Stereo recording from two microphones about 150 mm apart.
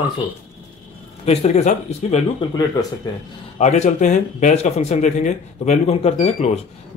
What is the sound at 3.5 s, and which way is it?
Speech, 50° left (ahead or behind).